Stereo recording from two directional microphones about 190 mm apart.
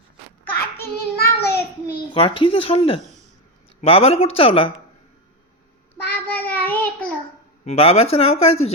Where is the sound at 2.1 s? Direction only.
25° left (ahead or behind).